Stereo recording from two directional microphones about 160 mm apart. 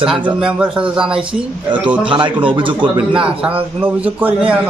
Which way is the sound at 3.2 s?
5° right (ahead or behind).